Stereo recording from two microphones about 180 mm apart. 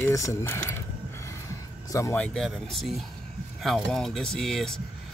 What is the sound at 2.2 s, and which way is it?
Speech, 5° left (ahead or behind).